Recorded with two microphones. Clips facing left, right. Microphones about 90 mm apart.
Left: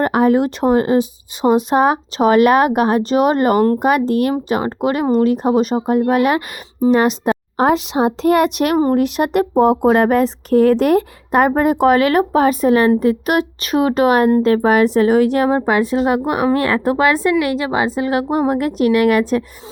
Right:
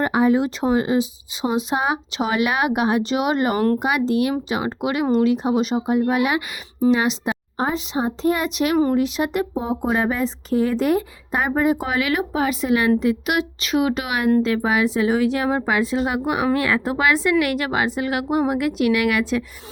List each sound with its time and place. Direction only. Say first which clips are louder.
0.0 s speech: left 4 dB; 55° left (ahead or behind)
7.5 s speech: left 8 dB; 75° left (ahead or behind); by 15.4 s 50° left (ahead or behind)
15.4 s a woman's voice: left 5 dB; 40° left (ahead or behind)
17.4 s a woman's voice: left 4 dB; 25° left (ahead or behind); by 19.5 s 45° left (ahead or behind)